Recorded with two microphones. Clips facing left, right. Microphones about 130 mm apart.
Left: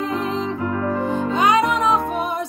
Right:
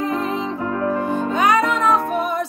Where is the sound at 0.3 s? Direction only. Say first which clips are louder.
Even; 15° right (ahead or behind).